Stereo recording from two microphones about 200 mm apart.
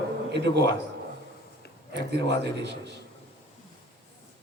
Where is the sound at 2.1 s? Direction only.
60° right (ahead or behind).